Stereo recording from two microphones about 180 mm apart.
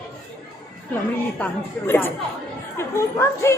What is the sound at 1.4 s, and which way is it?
Speech, 10° left (ahead or behind).